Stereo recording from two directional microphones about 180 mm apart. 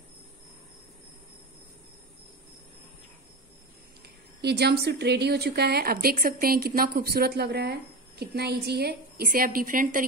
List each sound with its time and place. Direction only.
4.4 s speech: 65° right (ahead or behind); by 10.0 s 50° right (ahead or behind)